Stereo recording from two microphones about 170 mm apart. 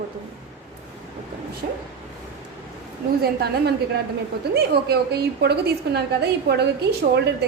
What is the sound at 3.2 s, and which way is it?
A woman's voice, 70° right (ahead or behind).